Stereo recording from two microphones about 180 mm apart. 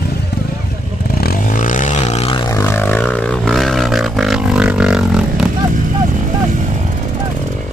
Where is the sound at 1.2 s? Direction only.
50° left (ahead or behind); by 2.4 s 35° left (ahead or behind).